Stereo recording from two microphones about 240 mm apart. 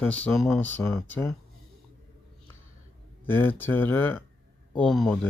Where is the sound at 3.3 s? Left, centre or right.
Centre.